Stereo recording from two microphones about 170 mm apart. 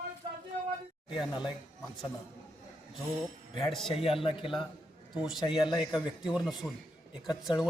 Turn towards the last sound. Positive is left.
turn(degrees=25)  # may be behind; listen again after turning